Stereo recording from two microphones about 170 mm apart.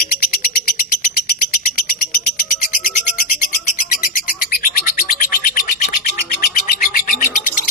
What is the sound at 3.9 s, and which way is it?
Bird, 60° left (ahead or behind).